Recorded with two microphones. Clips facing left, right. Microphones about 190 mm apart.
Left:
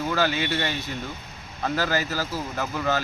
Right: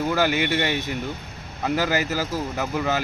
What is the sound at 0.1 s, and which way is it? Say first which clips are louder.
Speech: right 1 dB; 15° right (ahead or behind).